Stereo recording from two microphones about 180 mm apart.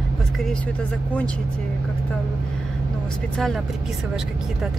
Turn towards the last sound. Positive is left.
turn(degrees=0)  # may be behind; listen again after turning